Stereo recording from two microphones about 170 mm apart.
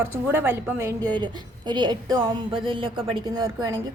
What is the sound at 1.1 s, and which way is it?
A woman's voice, 25° right (ahead or behind).